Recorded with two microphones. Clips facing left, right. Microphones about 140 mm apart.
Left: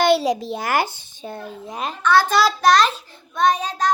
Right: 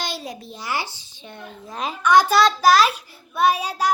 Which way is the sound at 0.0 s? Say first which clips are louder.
Left 14 dB; 75° left (ahead or behind).